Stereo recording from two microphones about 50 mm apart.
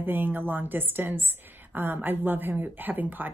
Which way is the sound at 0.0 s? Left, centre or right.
Right.